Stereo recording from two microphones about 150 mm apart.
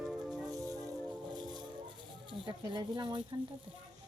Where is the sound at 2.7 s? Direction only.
30° right (ahead or behind).